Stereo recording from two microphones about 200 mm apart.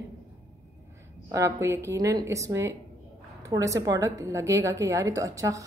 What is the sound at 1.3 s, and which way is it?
A woman's voice, 15° right (ahead or behind).